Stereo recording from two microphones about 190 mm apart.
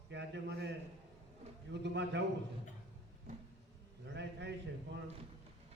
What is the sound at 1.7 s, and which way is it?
Speech, 65° right (ahead or behind).